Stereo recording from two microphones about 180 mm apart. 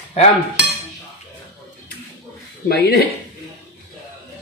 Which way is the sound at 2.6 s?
60° left (ahead or behind).